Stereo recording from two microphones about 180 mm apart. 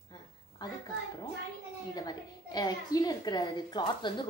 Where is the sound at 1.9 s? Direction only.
20° left (ahead or behind).